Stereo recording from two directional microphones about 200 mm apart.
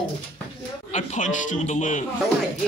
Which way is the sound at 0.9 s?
35° left (ahead or behind).